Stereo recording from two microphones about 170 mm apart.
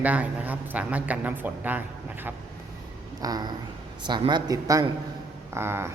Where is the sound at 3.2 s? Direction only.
20° right (ahead or behind).